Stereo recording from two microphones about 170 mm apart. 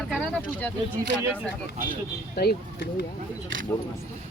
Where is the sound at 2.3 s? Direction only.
70° left (ahead or behind).